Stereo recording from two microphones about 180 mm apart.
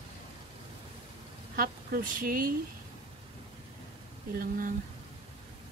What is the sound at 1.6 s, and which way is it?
Speech, 55° right (ahead or behind).